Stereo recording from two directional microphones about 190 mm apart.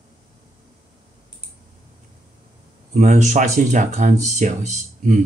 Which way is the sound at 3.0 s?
40° right (ahead or behind).